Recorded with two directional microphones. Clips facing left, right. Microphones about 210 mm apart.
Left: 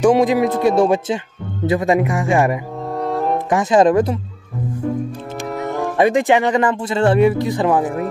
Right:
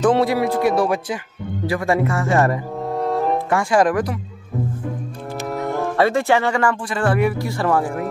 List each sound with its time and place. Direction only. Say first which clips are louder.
0.0 s speech: left 3 dB; 15° left (ahead or behind)
2.9 s music: even; centre (ahead or behind)
3.4 s speech: left 6 dB; 20° left (ahead or behind)
5.7 s speech: left 3 dB; 15° left (ahead or behind)